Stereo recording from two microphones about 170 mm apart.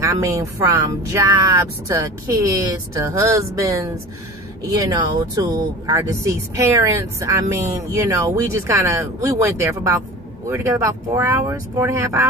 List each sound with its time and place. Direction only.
0.0 s speech: 20° right (ahead or behind)